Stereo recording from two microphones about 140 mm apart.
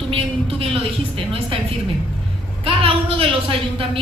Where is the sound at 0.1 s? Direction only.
40° right (ahead or behind).